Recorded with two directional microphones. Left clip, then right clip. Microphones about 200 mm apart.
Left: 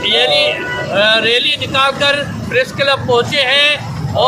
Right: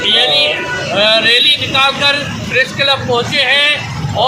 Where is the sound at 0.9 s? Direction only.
20° left (ahead or behind).